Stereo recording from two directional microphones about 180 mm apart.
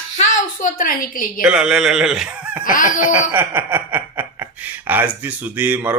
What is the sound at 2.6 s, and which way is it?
Speech, 50° left (ahead or behind).